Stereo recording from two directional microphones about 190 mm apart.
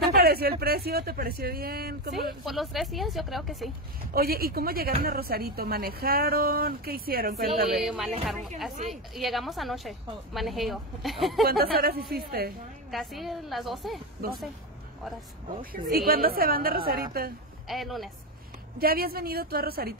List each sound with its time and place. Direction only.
0.1 s a woman's voice: 55° right (ahead or behind)
2.4 s a woman's voice: centre (ahead or behind)
4.1 s a woman's voice: 55° right (ahead or behind)
7.7 s a woman's voice: centre (ahead or behind)
11.4 s a woman's voice: 55° right (ahead or behind)
12.9 s a woman's voice: centre (ahead or behind)
15.6 s a woman's voice: 50° right (ahead or behind)
17.6 s a woman's voice: centre (ahead or behind)
18.8 s a woman's voice: 50° right (ahead or behind)